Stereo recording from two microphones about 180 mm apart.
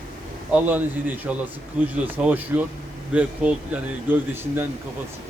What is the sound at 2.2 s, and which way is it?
Speech, 10° right (ahead or behind).